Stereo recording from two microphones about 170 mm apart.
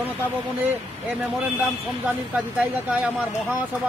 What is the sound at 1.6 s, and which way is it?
A man's voice, 10° right (ahead or behind).